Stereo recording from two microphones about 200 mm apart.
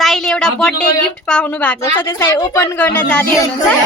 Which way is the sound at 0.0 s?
Centre (ahead or behind).